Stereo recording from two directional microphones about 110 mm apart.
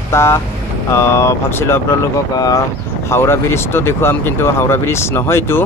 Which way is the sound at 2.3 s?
35° left (ahead or behind).